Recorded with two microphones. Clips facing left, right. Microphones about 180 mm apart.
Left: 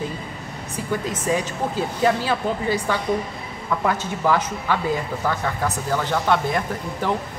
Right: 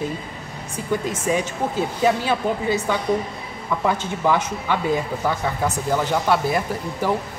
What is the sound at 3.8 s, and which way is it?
A woman's voice, 15° right (ahead or behind).